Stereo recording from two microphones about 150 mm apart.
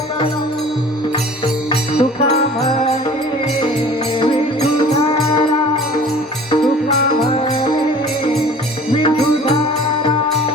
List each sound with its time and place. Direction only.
1.7 s music: 40° left (ahead or behind)
4.9 s music: 40° left (ahead or behind)
7.3 s music: 35° left (ahead or behind)
8.9 s music: 40° left (ahead or behind)